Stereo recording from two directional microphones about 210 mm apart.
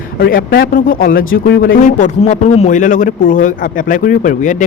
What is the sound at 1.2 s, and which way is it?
Speech, 60° left (ahead or behind).